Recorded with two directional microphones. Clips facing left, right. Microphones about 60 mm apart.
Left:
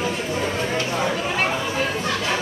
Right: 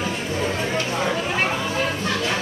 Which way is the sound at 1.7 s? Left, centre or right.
Centre.